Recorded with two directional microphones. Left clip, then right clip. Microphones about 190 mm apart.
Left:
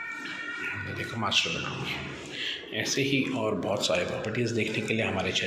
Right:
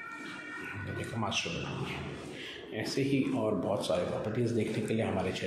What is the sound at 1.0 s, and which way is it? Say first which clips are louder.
Speech: left 7 dB; 5° right (ahead or behind).